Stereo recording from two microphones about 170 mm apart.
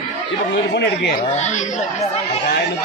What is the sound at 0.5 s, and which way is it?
Speech, 85° left.